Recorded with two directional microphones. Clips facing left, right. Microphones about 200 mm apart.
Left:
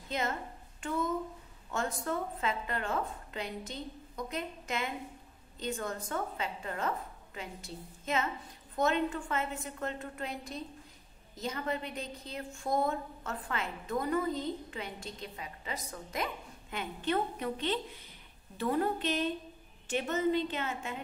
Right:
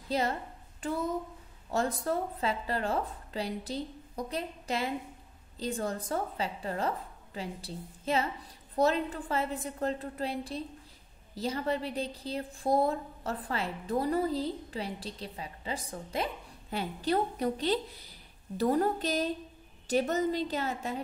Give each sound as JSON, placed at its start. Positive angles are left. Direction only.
{"t": 0.1, "sound": "a woman's voice", "side_deg": -35}